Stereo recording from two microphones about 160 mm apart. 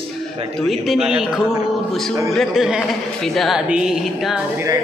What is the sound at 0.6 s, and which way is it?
Speech, centre (ahead or behind).